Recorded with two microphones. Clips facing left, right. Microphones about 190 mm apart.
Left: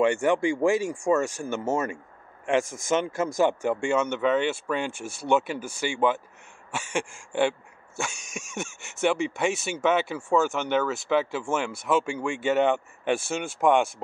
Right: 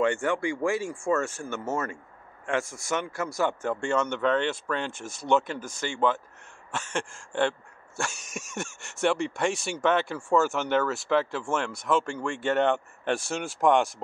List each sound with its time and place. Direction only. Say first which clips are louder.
0.0 s speech: left 4 dB; 15° left (ahead or behind)
2.6 s speech: left 4 dB; 90° left
2.9 s speech: left 5 dB; 20° left (ahead or behind)
8.0 s speech: even; centre (ahead or behind)